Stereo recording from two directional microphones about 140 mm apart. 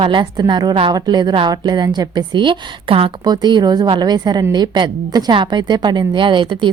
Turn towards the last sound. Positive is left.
turn(degrees=-35)  # may be behind; listen again after turning